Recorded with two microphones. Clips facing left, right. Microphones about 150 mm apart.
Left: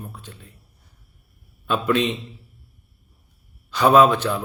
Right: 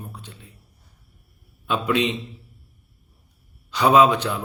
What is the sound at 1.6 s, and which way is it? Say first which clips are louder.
Speech: left 2 dB; 15° right (ahead or behind).